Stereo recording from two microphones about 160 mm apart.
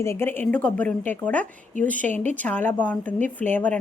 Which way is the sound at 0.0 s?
15° left (ahead or behind).